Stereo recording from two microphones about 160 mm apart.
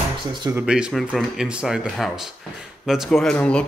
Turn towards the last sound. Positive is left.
turn(degrees=5)  # may be behind; listen again after turning